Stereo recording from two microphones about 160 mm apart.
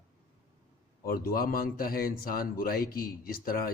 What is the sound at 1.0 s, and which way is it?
A man's voice, 65° left (ahead or behind).